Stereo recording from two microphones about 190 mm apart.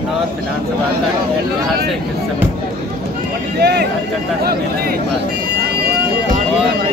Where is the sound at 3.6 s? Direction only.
60° right (ahead or behind).